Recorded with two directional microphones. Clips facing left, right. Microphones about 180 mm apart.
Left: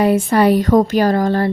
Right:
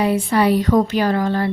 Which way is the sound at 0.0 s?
45° left (ahead or behind).